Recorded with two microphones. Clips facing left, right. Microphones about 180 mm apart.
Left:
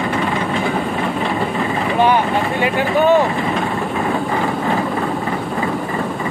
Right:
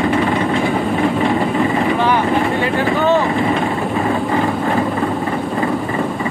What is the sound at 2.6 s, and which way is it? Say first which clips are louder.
Vehicle: left 1 dB; 15° left (ahead or behind).